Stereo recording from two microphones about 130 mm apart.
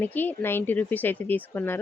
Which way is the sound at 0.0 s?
15° left (ahead or behind).